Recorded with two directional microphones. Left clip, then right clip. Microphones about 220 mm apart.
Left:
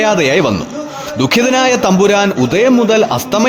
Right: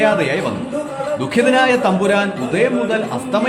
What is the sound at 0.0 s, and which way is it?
A man's voice, 50° left (ahead or behind).